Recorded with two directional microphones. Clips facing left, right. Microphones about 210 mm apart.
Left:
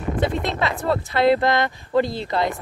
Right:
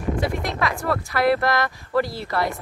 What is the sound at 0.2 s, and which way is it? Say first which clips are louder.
Speech: left 2 dB; 25° left (ahead or behind).